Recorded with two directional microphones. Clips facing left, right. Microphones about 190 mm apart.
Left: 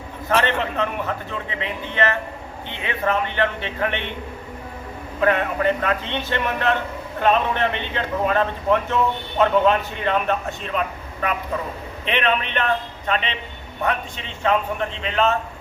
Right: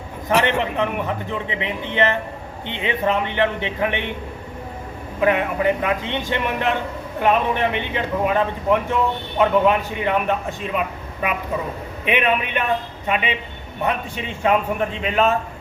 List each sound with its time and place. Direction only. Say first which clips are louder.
0.3 s a man's voice: right 2 dB; 15° right (ahead or behind)
5.2 s a man's voice: right 1 dB; 15° right (ahead or behind)